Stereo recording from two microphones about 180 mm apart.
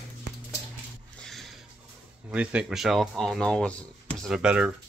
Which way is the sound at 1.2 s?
Centre (ahead or behind).